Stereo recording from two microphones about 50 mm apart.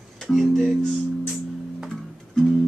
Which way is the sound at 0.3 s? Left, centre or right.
Centre.